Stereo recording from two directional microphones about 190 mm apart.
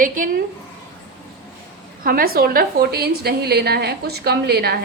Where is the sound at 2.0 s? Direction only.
50° right (ahead or behind).